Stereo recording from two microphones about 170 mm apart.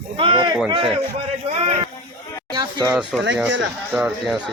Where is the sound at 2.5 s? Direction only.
25° right (ahead or behind).